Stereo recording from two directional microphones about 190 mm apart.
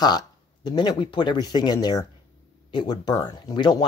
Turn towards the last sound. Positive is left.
turn(degrees=20)  # may be behind; listen again after turning